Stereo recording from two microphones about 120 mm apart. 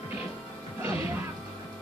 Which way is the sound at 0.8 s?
20° right (ahead or behind).